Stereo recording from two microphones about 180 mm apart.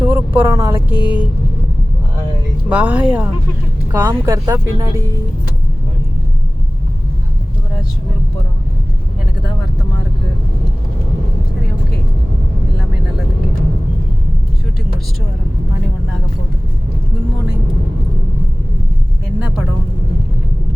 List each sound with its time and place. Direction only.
0.0 s speech: 10° right (ahead or behind)
2.6 s speech: 5° right (ahead or behind)
3.9 s speech: 20° right (ahead or behind)